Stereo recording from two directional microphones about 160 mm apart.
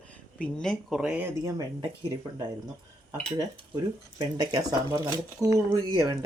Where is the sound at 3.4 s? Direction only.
25° right (ahead or behind).